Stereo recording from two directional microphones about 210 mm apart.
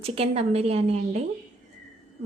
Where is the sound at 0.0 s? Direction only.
30° right (ahead or behind).